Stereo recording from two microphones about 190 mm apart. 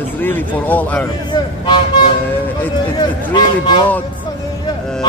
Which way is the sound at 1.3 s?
25° left (ahead or behind).